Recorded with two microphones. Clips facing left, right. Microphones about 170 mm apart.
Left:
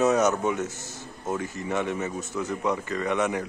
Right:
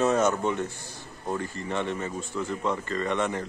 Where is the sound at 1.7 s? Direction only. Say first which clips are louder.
Left 2 dB; 5° left (ahead or behind).